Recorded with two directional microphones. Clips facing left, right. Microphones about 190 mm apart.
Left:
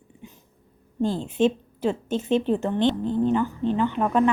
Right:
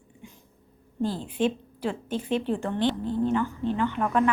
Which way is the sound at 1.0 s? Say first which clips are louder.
Left 4 dB; 25° left (ahead or behind).